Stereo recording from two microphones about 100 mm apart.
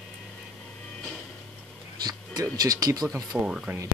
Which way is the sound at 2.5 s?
40° right (ahead or behind).